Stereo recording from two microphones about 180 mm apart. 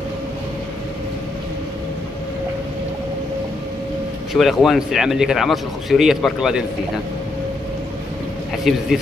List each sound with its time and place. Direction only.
4.3 s speech: centre (ahead or behind)
8.6 s speech: centre (ahead or behind)